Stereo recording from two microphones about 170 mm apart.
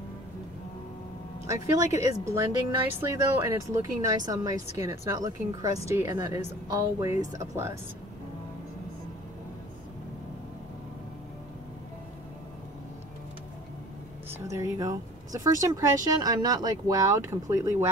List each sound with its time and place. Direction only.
1.5 s a woman's voice: 20° right (ahead or behind)
14.5 s speech: 20° right (ahead or behind)